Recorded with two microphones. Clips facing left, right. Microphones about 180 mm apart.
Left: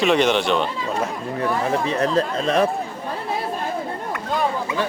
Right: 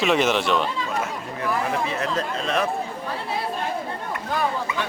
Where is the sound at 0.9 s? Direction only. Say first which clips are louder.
Left 3 dB; 35° left (ahead or behind).